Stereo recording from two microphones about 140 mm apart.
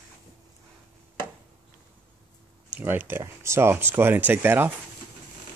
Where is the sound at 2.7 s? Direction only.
15° right (ahead or behind).